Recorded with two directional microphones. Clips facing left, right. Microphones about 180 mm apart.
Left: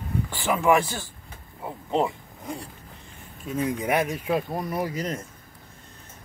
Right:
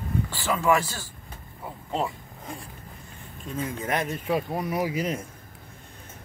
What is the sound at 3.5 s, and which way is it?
Speech, 15° left (ahead or behind).